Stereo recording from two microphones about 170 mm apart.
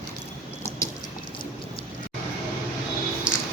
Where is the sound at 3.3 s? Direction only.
5° right (ahead or behind).